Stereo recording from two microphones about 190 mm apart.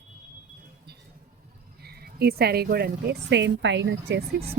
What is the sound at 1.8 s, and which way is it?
A woman's voice, 55° right (ahead or behind).